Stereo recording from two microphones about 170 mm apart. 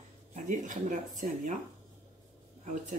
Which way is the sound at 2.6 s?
45° right (ahead or behind).